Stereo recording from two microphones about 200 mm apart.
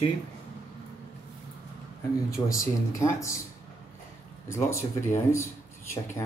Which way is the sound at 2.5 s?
15° left (ahead or behind).